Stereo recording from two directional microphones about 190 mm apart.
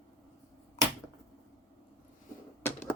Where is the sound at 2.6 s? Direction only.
10° left (ahead or behind).